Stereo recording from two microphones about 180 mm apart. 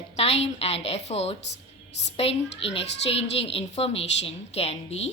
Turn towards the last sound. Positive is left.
turn(degrees=35)  # may be behind; listen again after turning